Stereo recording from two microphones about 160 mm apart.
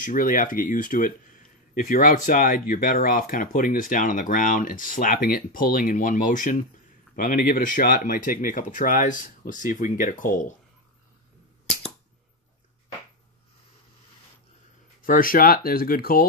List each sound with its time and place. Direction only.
0.0 s speech: 55° left (ahead or behind)
15.0 s speech: 60° left (ahead or behind)